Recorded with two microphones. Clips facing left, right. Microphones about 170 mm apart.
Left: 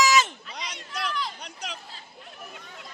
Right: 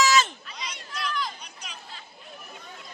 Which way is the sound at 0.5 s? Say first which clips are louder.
Left 2 dB; 75° left (ahead or behind).